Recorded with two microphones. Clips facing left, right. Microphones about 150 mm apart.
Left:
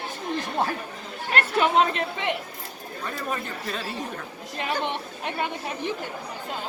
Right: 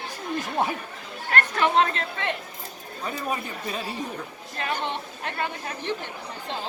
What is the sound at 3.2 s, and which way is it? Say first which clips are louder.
Speech: right 1 dB; 15° right (ahead or behind).